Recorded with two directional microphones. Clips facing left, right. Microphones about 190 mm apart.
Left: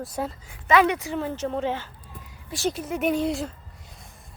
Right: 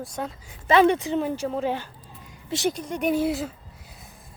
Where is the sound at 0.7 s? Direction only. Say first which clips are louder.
Right 2 dB; 30° right (ahead or behind).